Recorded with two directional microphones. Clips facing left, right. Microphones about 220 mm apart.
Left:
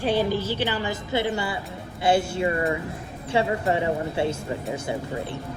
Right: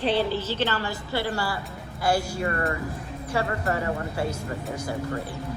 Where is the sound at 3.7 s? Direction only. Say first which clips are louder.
Left 3 dB; 25° left (ahead or behind).